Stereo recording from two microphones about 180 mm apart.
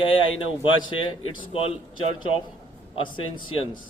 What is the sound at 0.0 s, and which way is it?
Speech, 25° left (ahead or behind).